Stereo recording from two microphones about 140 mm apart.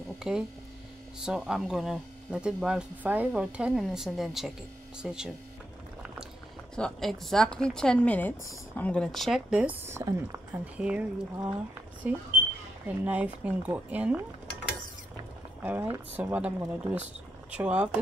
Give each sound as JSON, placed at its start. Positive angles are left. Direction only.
{"t": 0.3, "sound": "speech", "side_deg": -5}
{"t": 6.7, "sound": "speech", "side_deg": 5}
{"t": 9.8, "sound": "speech", "side_deg": -20}
{"t": 12.1, "sound": "speech", "side_deg": -10}
{"t": 15.6, "sound": "speech", "side_deg": -15}